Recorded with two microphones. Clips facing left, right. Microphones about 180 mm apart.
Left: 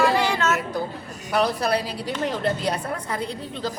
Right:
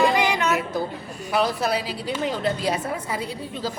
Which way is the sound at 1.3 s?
Centre (ahead or behind).